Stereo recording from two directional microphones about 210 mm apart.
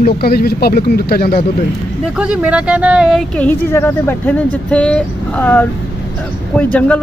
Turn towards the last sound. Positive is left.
turn(degrees=5)  # may be behind; listen again after turning